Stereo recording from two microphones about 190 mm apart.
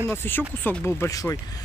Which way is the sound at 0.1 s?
10° left (ahead or behind).